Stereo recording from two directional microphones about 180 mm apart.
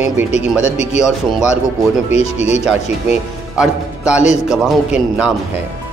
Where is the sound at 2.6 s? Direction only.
5° right (ahead or behind).